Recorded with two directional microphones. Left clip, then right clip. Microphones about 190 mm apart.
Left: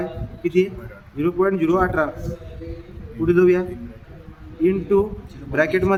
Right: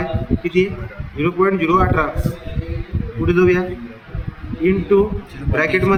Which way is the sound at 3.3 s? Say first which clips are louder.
Right 1 dB; 70° left (ahead or behind).